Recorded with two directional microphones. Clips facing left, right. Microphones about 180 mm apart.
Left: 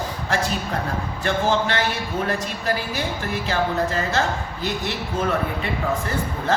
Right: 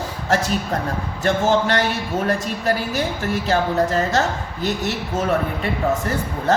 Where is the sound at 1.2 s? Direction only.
40° right (ahead or behind).